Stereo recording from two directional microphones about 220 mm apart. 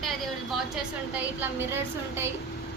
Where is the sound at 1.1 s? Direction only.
10° right (ahead or behind).